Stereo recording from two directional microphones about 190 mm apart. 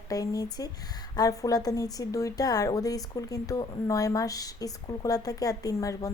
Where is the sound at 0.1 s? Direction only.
20° left (ahead or behind).